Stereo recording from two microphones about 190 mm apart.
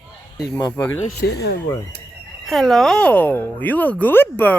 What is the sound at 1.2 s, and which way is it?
Speech, 55° left (ahead or behind).